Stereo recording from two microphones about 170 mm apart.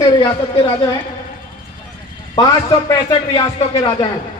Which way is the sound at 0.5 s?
20° left (ahead or behind).